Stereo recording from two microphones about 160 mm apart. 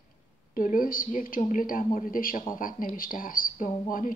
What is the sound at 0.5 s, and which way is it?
A woman's voice, 60° left (ahead or behind).